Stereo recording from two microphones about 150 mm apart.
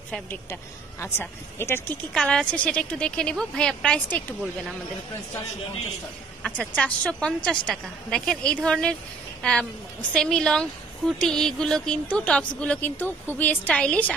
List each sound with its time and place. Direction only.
0.1 s a woman's voice: 15° left (ahead or behind)
6.4 s a woman's voice: 5° left (ahead or behind)